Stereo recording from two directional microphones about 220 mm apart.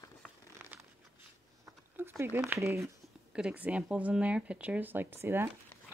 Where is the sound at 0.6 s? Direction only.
10° right (ahead or behind).